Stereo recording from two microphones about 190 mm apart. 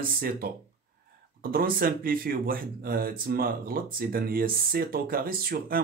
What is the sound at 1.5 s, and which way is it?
Speech, 50° right (ahead or behind).